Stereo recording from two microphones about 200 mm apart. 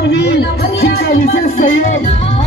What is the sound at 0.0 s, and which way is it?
Speech, 60° left (ahead or behind).